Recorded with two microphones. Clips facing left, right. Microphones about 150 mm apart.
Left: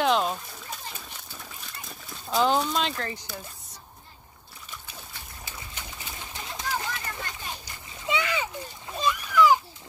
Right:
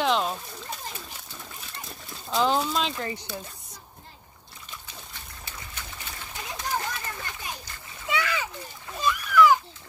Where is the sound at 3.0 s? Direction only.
20° right (ahead or behind).